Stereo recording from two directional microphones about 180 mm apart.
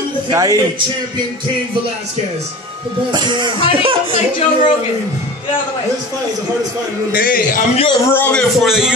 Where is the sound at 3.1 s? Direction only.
25° right (ahead or behind).